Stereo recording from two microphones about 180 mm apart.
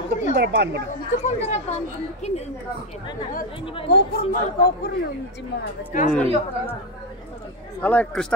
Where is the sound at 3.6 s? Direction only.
30° left (ahead or behind).